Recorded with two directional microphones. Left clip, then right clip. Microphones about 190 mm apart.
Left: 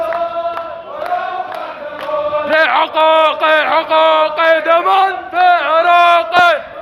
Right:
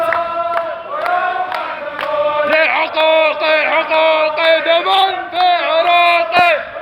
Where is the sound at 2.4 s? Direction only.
20° left (ahead or behind).